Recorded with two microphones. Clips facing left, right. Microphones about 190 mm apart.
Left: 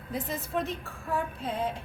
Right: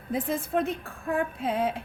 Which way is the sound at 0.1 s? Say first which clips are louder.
Right 5 dB; 50° right (ahead or behind).